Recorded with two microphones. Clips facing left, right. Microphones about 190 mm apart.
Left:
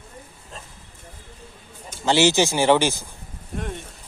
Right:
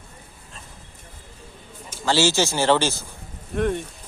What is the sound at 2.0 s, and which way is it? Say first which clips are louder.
A man's voice: left 2 dB; 20° left (ahead or behind).